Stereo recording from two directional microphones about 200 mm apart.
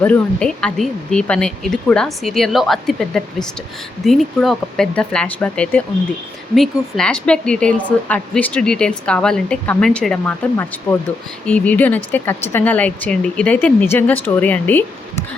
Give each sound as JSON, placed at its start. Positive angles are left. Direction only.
{"t": 0.0, "sound": "a woman's voice", "side_deg": 5}